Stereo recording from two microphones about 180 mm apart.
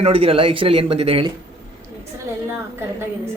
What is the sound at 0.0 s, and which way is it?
Speech, 30° right (ahead or behind).